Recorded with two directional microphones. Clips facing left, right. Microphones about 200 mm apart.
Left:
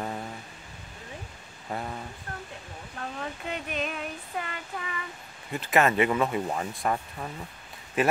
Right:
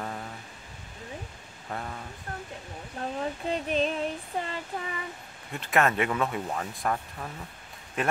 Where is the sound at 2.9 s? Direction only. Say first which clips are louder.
Right 4 dB; 30° right (ahead or behind).